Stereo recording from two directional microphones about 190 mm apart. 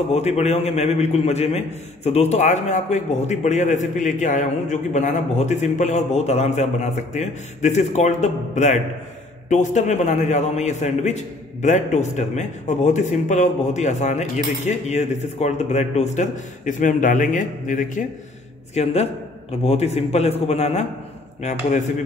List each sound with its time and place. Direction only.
0.1 s a man's voice: 35° left (ahead or behind)